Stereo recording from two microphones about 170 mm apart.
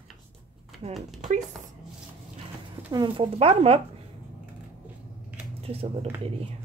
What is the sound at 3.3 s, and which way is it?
Speech, 35° right (ahead or behind).